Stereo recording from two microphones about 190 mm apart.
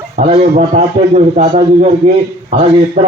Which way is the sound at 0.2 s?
35° right (ahead or behind).